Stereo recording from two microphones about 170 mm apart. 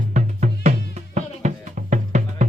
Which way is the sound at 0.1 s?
45° right (ahead or behind).